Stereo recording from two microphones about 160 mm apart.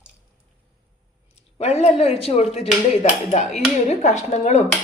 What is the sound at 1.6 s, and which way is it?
Speech, 40° left (ahead or behind).